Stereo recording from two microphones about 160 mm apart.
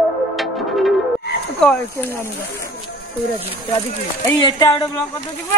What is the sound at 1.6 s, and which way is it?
Speech, 5° left (ahead or behind).